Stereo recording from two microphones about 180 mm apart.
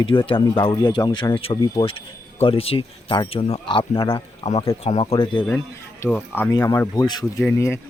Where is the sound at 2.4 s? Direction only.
30° left (ahead or behind).